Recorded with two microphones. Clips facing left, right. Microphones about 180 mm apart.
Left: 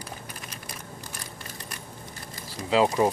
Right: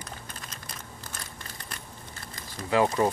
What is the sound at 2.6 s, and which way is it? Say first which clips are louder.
Speech: left 2 dB; 15° left (ahead or behind).